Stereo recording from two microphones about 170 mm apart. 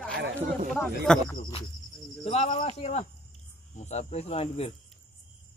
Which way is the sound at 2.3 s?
35° left (ahead or behind).